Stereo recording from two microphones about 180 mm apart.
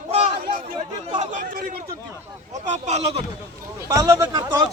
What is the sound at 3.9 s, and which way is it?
Speech, 15° right (ahead or behind).